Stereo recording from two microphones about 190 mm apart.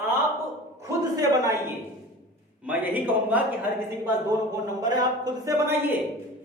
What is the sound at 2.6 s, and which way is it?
Speech, 10° right (ahead or behind).